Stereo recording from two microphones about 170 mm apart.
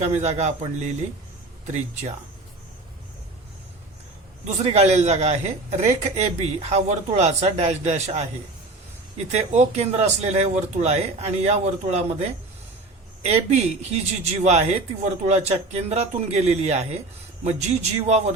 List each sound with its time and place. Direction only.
0.0 s a man's voice: 40° right (ahead or behind)
4.4 s speech: 40° right (ahead or behind)